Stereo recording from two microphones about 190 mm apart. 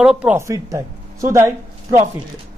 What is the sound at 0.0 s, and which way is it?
A woman's voice, 5° right (ahead or behind).